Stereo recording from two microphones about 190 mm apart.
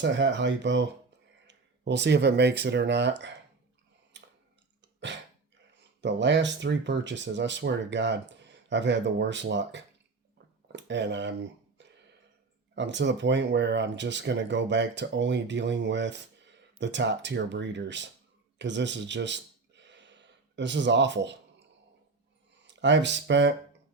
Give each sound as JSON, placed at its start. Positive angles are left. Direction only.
{"t": 0.0, "sound": "speech", "side_deg": -65}
{"t": 4.1, "sound": "tick-tock", "side_deg": -70}
{"t": 6.0, "sound": "speech", "side_deg": -70}
{"t": 10.3, "sound": "a sound", "side_deg": -70}
{"t": 11.8, "sound": "burping", "side_deg": -70}
{"t": 12.7, "sound": "speech", "side_deg": -70}
{"t": 18.6, "sound": "a sound", "side_deg": -70}
{"t": 22.6, "sound": "speech", "side_deg": -70}